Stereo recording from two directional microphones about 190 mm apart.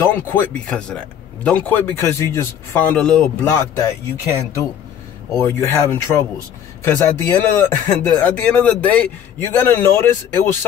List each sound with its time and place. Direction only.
0.1 s speech: 5° left (ahead or behind)